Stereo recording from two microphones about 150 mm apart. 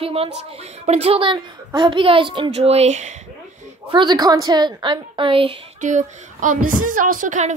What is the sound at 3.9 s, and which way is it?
A woman's voice, 30° right (ahead or behind).